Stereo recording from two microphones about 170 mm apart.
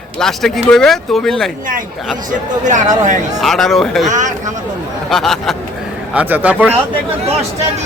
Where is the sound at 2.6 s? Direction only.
45° right (ahead or behind).